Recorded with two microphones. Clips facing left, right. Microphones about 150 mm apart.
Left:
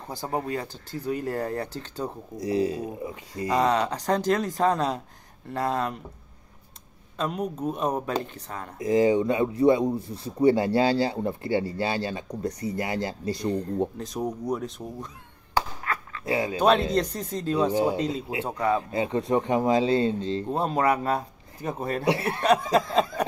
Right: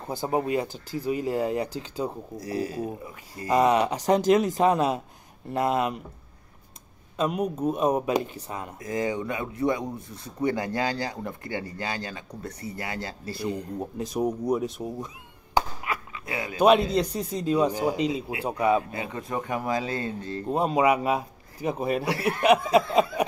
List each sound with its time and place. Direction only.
0.1 s speech: 15° right (ahead or behind)
2.4 s speech: 20° left (ahead or behind)
3.5 s speech: 15° right (ahead or behind)
7.2 s a man's voice: 15° right (ahead or behind)
8.7 s speech: 25° left (ahead or behind)
12.7 s speech: 20° left (ahead or behind)
13.4 s speech: 10° right (ahead or behind)
15.5 s a sound: 15° right (ahead or behind)
16.3 s speech: 30° left (ahead or behind)
16.6 s speech: 10° right (ahead or behind)
18.9 s speech: 30° left (ahead or behind)
20.4 s speech: 10° right (ahead or behind)
22.0 s speech: 25° left (ahead or behind)
22.4 s speech: 10° right (ahead or behind)